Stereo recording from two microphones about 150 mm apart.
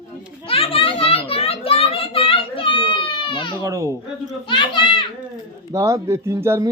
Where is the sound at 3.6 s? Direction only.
20° right (ahead or behind).